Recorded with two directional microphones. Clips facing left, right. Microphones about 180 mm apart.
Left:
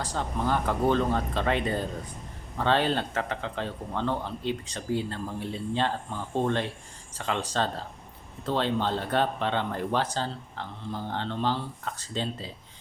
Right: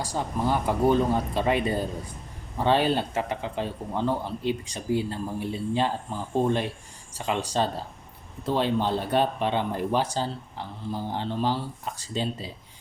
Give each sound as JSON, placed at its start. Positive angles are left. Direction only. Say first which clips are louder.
{"t": 0.0, "sound": "speech", "louder": "right 2 dB", "side_deg": -10}